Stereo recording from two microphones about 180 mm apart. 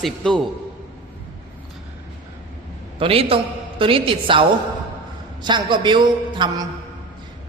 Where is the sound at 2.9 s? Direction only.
30° right (ahead or behind).